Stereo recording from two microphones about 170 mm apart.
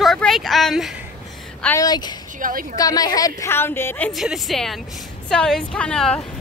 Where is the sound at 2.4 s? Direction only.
55° right (ahead or behind).